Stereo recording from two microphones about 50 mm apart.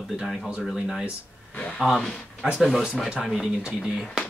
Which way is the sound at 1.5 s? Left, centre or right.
Left.